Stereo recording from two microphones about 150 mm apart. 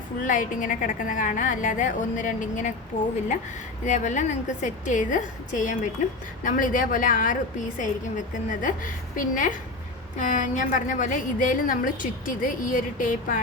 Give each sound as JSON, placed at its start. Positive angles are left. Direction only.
{"t": 0.2, "sound": "a woman's voice", "side_deg": 65}
{"t": 3.8, "sound": "a woman's voice", "side_deg": 55}